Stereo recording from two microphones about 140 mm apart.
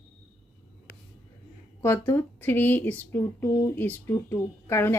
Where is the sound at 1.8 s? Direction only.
20° left (ahead or behind).